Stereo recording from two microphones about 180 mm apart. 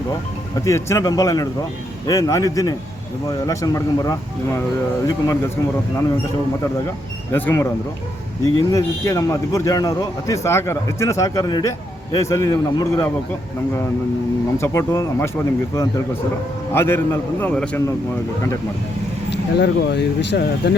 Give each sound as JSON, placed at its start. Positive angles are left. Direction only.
{"t": 0.6, "sound": "a man's voice", "side_deg": 15}
{"t": 7.3, "sound": "a man's voice", "side_deg": 15}
{"t": 14.6, "sound": "a man's voice", "side_deg": 15}
{"t": 16.7, "sound": "a man's voice", "side_deg": 15}
{"t": 19.3, "sound": "speech", "side_deg": 70}